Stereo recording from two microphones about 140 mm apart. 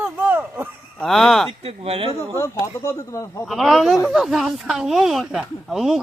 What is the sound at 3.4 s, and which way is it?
Speech, centre (ahead or behind).